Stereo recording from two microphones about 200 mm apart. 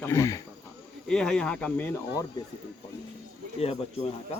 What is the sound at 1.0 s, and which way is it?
Speech, 5° left (ahead or behind).